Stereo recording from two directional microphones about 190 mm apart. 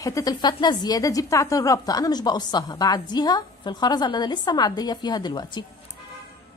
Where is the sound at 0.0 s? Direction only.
20° left (ahead or behind).